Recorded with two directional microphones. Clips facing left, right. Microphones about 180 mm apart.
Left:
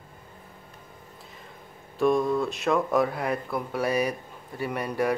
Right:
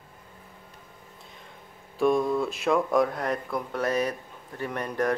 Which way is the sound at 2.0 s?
Centre (ahead or behind).